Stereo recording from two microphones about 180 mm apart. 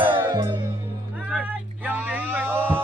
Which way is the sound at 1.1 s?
5° right (ahead or behind).